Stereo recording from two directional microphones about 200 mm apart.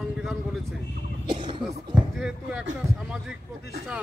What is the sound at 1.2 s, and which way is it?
Speech, 25° right (ahead or behind).